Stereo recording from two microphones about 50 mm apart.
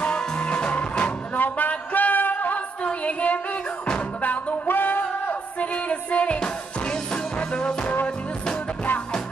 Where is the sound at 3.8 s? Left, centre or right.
Centre.